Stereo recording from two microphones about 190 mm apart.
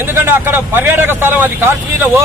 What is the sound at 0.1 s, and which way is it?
Speech, 10° right (ahead or behind).